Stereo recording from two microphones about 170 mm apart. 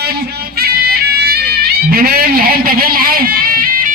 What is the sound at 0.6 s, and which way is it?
Music, 65° right (ahead or behind).